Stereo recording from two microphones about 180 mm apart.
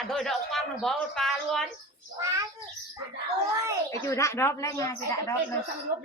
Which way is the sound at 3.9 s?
15° left (ahead or behind).